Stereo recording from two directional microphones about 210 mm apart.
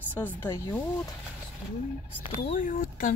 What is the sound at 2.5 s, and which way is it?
Speech, 40° left (ahead or behind).